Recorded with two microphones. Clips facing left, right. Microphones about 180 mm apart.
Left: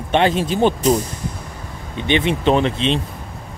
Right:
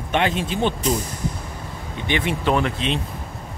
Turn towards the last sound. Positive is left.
turn(degrees=25)  # may be behind; listen again after turning